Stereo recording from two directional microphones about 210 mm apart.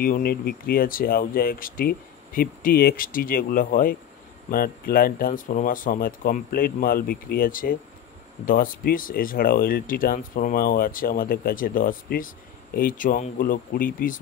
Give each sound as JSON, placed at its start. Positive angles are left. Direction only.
{"t": 0.0, "sound": "speech", "side_deg": 45}